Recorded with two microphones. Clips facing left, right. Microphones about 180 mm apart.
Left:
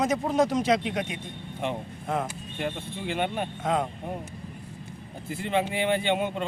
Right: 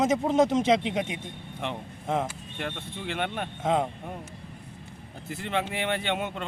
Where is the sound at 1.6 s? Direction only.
5° left (ahead or behind).